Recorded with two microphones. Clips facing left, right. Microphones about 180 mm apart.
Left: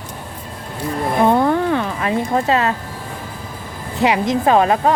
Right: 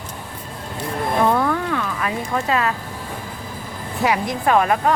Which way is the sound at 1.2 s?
25° left (ahead or behind).